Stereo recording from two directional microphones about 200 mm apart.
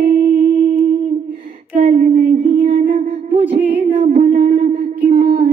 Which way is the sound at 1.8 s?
40° right (ahead or behind).